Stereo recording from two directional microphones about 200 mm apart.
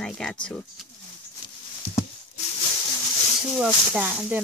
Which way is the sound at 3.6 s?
5° right (ahead or behind).